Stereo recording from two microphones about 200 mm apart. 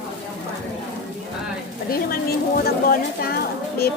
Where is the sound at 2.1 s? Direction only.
50° left (ahead or behind).